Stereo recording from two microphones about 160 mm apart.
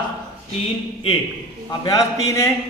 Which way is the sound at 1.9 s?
20° left (ahead or behind).